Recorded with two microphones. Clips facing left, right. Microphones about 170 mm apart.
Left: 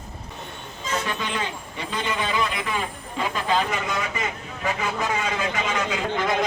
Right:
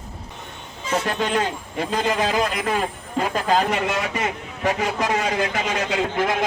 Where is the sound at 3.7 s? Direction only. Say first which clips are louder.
Right 4 dB; 75° right (ahead or behind).